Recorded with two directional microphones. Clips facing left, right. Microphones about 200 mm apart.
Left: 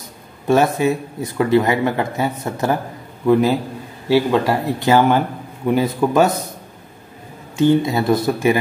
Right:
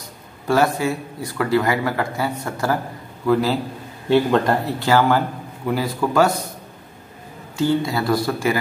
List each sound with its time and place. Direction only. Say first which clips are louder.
0.5 s speech: left 3 dB; 20° left (ahead or behind)
4.1 s speech: left 1 dB; 5° left (ahead or behind)
4.7 s speech: left 4 dB; 20° left (ahead or behind)
7.5 s speech: left 5 dB; 20° left (ahead or behind)